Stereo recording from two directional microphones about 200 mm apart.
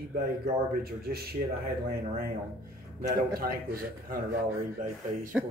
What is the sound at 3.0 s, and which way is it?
Speech, 50° right (ahead or behind).